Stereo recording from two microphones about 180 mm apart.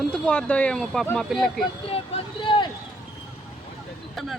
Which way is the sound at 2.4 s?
25° left (ahead or behind).